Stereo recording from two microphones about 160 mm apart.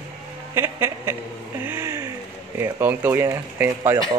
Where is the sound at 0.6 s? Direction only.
15° right (ahead or behind).